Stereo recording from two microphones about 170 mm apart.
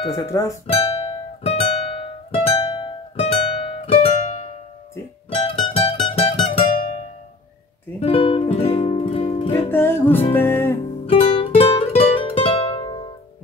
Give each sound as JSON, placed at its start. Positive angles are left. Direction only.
{"t": 0.1, "sound": "speech", "side_deg": 20}
{"t": 0.7, "sound": "music", "side_deg": 35}
{"t": 8.0, "sound": "music", "side_deg": 30}
{"t": 9.7, "sound": "music", "side_deg": 15}
{"t": 11.1, "sound": "music", "side_deg": 35}